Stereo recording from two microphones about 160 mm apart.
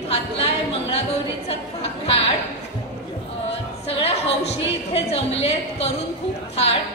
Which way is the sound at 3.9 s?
35° left (ahead or behind).